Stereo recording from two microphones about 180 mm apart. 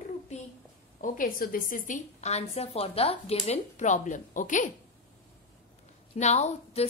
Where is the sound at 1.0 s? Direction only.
50° left (ahead or behind).